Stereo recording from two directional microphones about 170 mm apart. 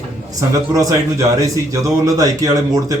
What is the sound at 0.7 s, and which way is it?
A man's voice, 20° right (ahead or behind).